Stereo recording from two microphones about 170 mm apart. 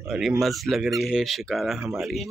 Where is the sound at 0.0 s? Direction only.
Centre (ahead or behind).